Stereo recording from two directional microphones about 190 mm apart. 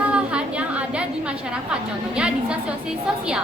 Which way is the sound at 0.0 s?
5° right (ahead or behind).